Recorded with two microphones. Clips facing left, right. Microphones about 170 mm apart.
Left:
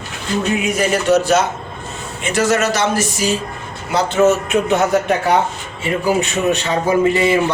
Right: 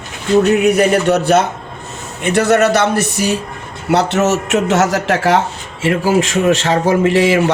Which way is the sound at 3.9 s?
75° right (ahead or behind).